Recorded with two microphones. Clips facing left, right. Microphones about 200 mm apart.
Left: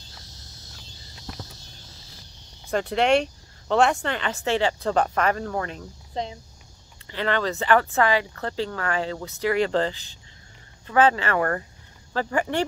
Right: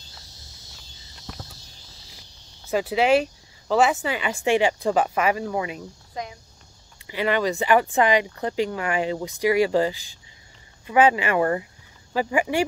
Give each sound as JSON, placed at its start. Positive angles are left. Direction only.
{"t": 2.7, "sound": "speech", "side_deg": -5}
{"t": 6.2, "sound": "speech", "side_deg": 30}
{"t": 7.1, "sound": "speech", "side_deg": -10}